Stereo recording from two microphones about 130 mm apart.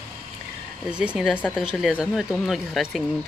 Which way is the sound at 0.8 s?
5° right (ahead or behind).